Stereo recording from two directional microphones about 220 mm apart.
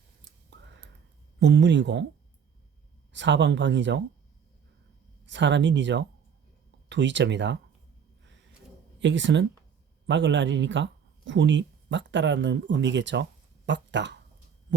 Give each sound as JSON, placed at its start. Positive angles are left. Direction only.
{"t": 1.4, "sound": "speech", "side_deg": -55}
{"t": 3.1, "sound": "speech", "side_deg": -55}
{"t": 5.2, "sound": "speech", "side_deg": -55}
{"t": 9.0, "sound": "speech", "side_deg": -55}